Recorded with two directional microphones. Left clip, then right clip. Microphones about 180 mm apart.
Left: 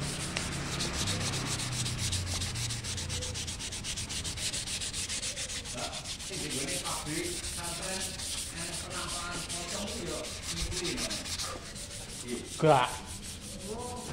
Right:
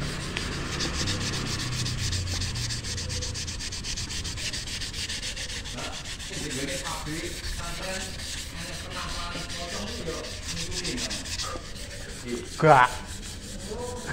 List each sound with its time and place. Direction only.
0.3 s rub: 40° left (ahead or behind)
10.8 s rub: 45° left (ahead or behind)
12.5 s sanding: 10° right (ahead or behind)